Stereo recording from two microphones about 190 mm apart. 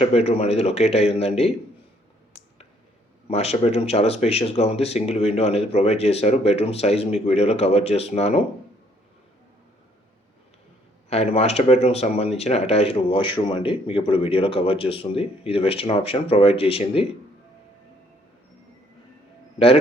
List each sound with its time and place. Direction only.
0.0 s speech: 35° left (ahead or behind)
3.2 s speech: 35° left (ahead or behind)
11.1 s speech: 35° left (ahead or behind)
19.5 s a man's voice: 30° left (ahead or behind)